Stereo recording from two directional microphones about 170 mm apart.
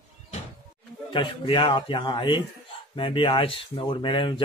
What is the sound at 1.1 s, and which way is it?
A man's voice, 30° left (ahead or behind).